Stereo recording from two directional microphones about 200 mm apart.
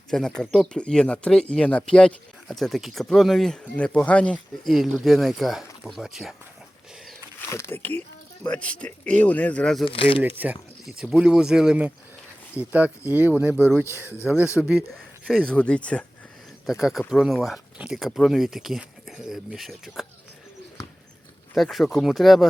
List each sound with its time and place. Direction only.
0.1 s speech: 5° left (ahead or behind)
7.3 s speech: 10° left (ahead or behind)
9.8 s speech: 25° left (ahead or behind)
10.2 s speech: 10° right (ahead or behind)
21.5 s speech: centre (ahead or behind)